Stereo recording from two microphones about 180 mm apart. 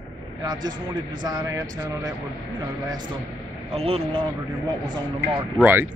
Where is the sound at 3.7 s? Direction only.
35° right (ahead or behind).